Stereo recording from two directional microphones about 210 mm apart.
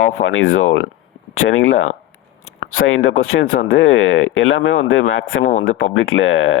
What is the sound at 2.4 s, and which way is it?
Speech, 80° left.